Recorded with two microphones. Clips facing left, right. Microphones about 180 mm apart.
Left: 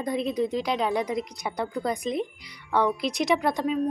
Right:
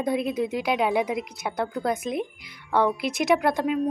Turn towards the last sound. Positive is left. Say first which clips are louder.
# right 2 dB
turn(degrees=0)  # may be behind; listen again after turning